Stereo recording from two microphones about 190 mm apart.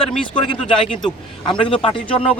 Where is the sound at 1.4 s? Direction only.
25° left (ahead or behind).